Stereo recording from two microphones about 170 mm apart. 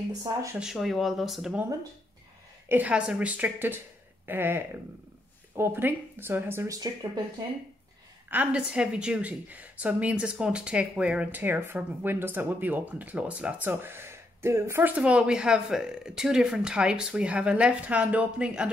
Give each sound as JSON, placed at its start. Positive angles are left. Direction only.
{"t": 0.2, "sound": "speech", "side_deg": -20}
{"t": 0.6, "sound": "speech", "side_deg": 0}
{"t": 2.7, "sound": "a woman's voice", "side_deg": -10}
{"t": 8.3, "sound": "a woman's voice", "side_deg": -10}